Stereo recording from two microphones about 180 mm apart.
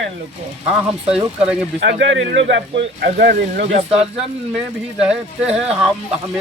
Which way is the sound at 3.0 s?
60° right (ahead or behind).